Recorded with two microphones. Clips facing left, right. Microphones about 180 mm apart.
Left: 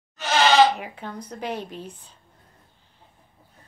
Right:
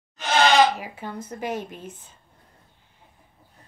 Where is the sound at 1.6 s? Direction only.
50° right (ahead or behind).